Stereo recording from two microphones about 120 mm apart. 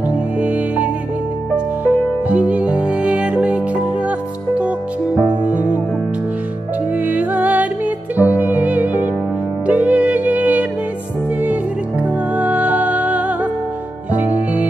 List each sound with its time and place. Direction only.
0.4 s music: 10° right (ahead or behind)
1.9 s music: 10° right (ahead or behind)
5.4 s music: 90° right
7.1 s music: 15° right (ahead or behind)
12.0 s music: 10° right (ahead or behind)